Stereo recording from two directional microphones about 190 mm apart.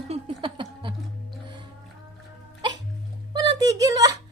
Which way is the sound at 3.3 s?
20° right (ahead or behind).